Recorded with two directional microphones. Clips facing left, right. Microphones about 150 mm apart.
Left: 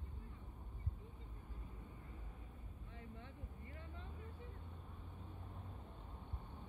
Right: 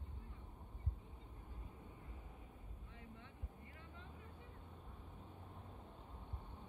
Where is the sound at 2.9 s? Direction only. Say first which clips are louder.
Left 3 dB; 35° left (ahead or behind).